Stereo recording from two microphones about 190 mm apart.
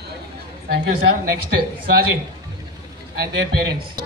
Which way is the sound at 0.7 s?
75° right (ahead or behind).